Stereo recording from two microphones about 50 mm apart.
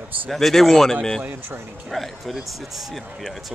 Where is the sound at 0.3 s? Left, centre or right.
Centre.